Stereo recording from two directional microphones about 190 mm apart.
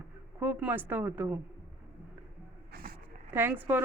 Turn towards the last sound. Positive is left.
turn(degrees=-10)  # may be behind; listen again after turning